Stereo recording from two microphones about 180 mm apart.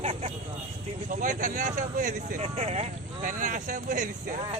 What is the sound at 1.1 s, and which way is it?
Speech, 45° right (ahead or behind).